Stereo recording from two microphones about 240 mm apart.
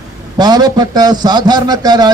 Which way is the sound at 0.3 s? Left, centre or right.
Centre.